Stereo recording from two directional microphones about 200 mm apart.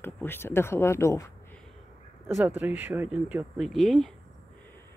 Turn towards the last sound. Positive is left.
turn(degrees=0)  # may be behind; listen again after turning